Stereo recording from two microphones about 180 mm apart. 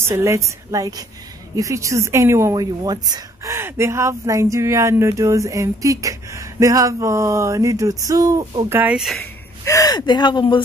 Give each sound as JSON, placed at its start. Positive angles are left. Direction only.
{"t": 0.1, "sound": "a woman's voice", "side_deg": -15}
{"t": 9.2, "sound": "speech", "side_deg": 20}